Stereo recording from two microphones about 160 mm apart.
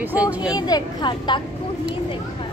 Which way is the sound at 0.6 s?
25° left (ahead or behind).